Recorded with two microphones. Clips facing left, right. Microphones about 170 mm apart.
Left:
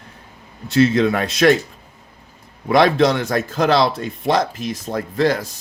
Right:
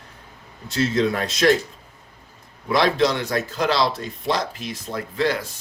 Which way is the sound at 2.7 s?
55° left (ahead or behind).